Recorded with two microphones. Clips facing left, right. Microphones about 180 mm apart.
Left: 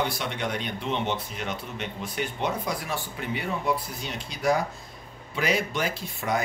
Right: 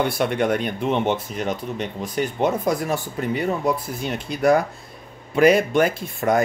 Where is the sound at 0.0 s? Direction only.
55° right (ahead or behind).